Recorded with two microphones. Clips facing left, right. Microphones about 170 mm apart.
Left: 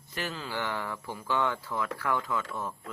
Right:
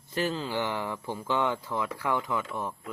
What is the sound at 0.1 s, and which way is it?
Speech, 30° right (ahead or behind).